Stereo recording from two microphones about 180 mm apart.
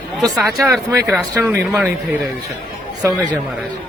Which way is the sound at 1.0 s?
5° left (ahead or behind).